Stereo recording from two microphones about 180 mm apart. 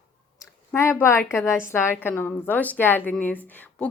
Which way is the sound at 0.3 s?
15° left (ahead or behind).